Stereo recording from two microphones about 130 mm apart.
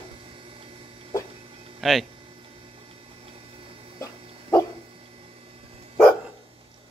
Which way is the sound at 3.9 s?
20° left (ahead or behind).